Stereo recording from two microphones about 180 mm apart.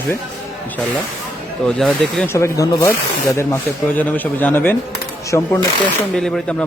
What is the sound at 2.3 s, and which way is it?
Speech, 15° left (ahead or behind).